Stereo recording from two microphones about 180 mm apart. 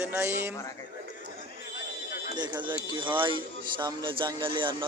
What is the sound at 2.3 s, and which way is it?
A man's voice, 25° right (ahead or behind).